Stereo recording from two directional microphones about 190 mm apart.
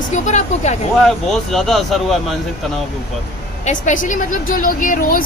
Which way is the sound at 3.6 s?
40° left (ahead or behind).